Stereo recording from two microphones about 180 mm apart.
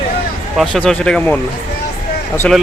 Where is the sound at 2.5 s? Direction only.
5° left (ahead or behind).